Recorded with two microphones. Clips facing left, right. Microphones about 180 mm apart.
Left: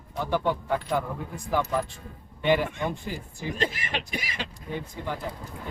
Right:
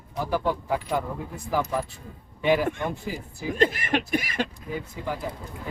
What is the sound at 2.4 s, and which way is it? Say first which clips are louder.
Speech: right 1 dB; centre (ahead or behind).